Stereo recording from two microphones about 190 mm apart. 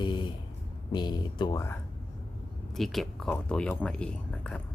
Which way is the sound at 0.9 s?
25° left (ahead or behind).